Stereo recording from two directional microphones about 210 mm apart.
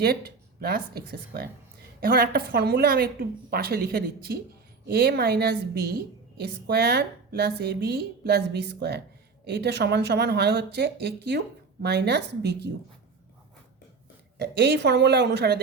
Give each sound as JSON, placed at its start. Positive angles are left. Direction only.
{"t": 0.0, "sound": "speech", "side_deg": -50}
{"t": 14.3, "sound": "speech", "side_deg": -50}